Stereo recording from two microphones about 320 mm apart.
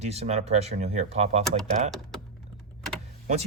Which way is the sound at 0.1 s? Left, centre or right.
Centre.